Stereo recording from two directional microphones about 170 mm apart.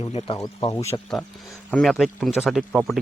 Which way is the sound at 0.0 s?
35° left (ahead or behind).